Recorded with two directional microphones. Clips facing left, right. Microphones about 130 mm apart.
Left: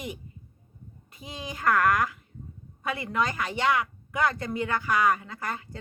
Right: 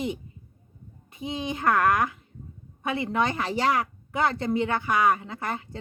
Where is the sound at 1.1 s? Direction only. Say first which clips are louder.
Right 8 dB; 25° right (ahead or behind).